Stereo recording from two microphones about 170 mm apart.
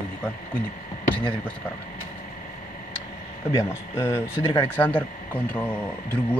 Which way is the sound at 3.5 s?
15° left (ahead or behind).